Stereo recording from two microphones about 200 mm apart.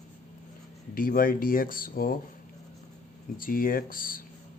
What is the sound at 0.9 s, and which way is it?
Speech, 45° left (ahead or behind).